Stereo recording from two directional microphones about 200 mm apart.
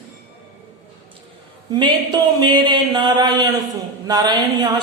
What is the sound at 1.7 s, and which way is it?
A man's voice, 20° right (ahead or behind).